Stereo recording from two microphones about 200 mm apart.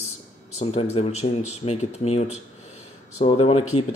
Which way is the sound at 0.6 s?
30° left (ahead or behind).